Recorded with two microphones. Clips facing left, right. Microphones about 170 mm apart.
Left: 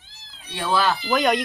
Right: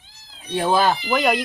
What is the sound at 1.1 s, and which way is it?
Speech, centre (ahead or behind).